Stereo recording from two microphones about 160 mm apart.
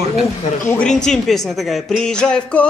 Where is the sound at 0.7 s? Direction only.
10° left (ahead or behind).